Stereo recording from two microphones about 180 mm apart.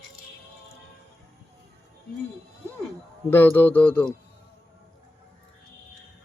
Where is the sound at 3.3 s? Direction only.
10° left (ahead or behind).